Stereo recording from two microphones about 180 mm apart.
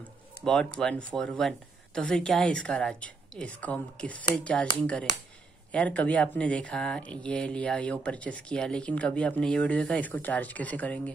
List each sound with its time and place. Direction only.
0.5 s speech: 5° left (ahead or behind)
5.7 s speech: 5° left (ahead or behind)